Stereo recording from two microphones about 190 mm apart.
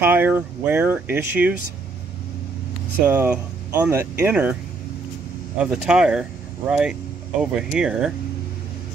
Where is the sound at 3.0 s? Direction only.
10° right (ahead or behind).